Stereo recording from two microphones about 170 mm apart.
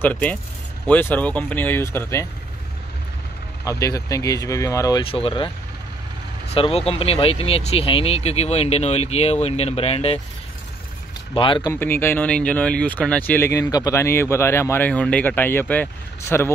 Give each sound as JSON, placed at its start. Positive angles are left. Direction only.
{"t": 0.0, "sound": "speech", "side_deg": 10}
{"t": 3.6, "sound": "speech", "side_deg": 20}
{"t": 5.0, "sound": "speech", "side_deg": 30}
{"t": 6.5, "sound": "speech", "side_deg": 35}
{"t": 11.3, "sound": "speech", "side_deg": 30}
{"t": 11.7, "sound": "speech", "side_deg": 15}